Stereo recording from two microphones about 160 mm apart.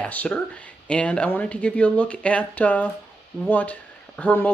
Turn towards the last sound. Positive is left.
turn(degrees=10)  # may be behind; listen again after turning